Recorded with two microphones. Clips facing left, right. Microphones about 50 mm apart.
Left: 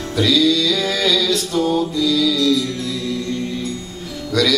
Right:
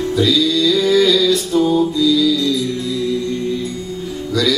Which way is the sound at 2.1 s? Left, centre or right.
Left.